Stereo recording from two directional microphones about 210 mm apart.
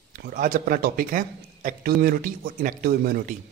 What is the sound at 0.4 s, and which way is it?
Speech, 40° right (ahead or behind).